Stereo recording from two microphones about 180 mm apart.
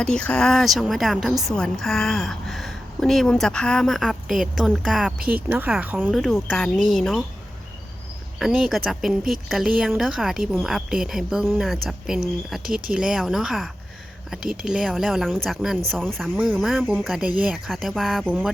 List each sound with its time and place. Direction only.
0.0 s a woman's voice: 5° left (ahead or behind)
6.1 s a woman's voice: centre (ahead or behind)
8.4 s a woman's voice: centre (ahead or behind)